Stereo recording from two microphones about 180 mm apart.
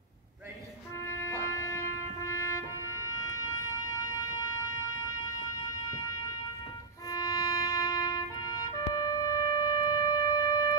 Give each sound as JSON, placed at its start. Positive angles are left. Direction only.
{"t": 1.0, "sound": "music", "side_deg": 15}
{"t": 7.1, "sound": "music", "side_deg": 20}